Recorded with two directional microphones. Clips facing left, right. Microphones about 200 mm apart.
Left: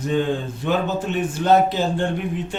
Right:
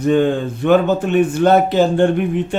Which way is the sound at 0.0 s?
60° right (ahead or behind).